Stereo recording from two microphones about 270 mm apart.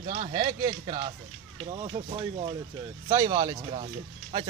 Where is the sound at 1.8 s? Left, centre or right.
Centre.